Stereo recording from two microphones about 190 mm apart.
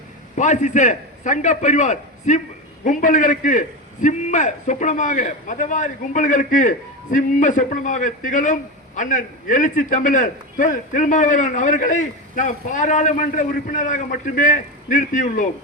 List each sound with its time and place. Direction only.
0.3 s a man's voice: 40° left (ahead or behind)